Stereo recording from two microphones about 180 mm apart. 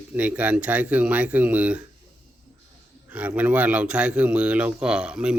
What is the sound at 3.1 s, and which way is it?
Speech, 5° right (ahead or behind).